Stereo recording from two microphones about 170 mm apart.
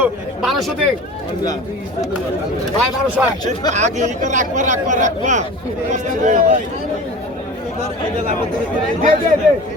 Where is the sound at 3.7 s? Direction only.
45° right (ahead or behind).